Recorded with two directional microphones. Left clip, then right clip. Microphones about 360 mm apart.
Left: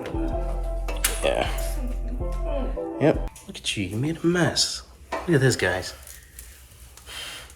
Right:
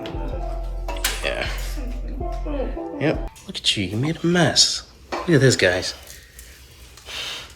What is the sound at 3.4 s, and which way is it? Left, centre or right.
Speech, centre.